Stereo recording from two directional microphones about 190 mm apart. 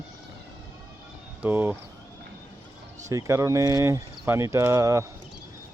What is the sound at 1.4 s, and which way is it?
Speech, 10° right (ahead or behind).